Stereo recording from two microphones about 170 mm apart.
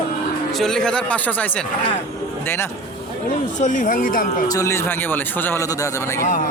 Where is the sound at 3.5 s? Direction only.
50° left (ahead or behind).